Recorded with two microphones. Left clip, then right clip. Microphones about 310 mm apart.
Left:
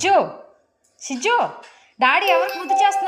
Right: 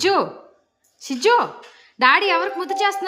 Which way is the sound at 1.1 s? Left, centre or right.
Centre.